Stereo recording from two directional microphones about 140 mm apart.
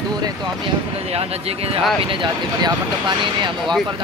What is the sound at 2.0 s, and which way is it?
Speech, 35° right (ahead or behind).